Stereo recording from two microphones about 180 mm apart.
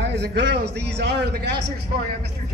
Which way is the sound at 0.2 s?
70° right (ahead or behind).